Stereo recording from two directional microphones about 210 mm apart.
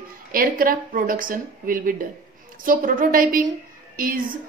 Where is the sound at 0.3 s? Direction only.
45° right (ahead or behind).